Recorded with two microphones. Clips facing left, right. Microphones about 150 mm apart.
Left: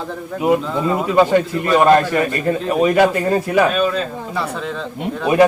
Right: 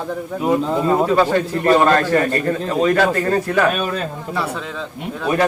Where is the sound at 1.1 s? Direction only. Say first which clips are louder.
Left 2 dB; 15° left (ahead or behind).